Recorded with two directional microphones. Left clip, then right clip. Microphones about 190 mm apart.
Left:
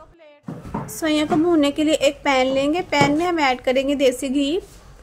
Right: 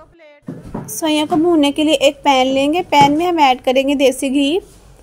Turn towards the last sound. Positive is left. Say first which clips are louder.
# right 6 dB
turn(degrees=-20)  # may be behind; listen again after turning